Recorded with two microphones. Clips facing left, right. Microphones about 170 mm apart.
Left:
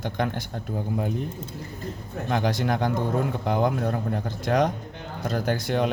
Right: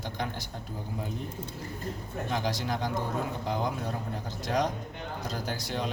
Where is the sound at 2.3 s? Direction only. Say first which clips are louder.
Left 7 dB; 60° left (ahead or behind).